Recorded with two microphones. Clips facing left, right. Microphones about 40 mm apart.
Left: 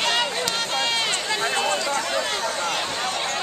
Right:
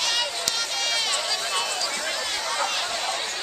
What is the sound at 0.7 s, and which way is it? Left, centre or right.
Run, left.